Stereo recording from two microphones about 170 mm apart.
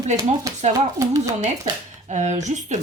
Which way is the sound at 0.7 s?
20° right (ahead or behind).